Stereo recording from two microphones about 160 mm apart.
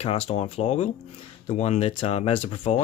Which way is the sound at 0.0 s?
40° left (ahead or behind).